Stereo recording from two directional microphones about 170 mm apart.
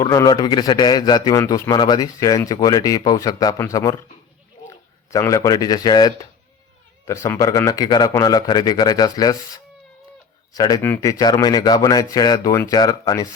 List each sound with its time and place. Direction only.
0.0 s a man's voice: 20° left (ahead or behind)
10.5 s a man's voice: 20° left (ahead or behind)